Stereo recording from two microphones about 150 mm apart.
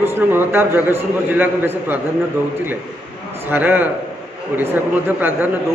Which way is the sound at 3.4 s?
10° right (ahead or behind).